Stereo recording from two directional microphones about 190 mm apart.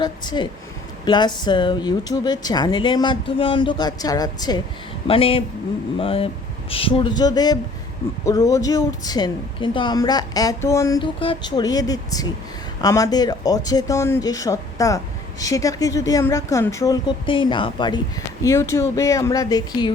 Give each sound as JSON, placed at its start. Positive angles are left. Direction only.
{"t": 0.0, "sound": "a woman's voice", "side_deg": 20}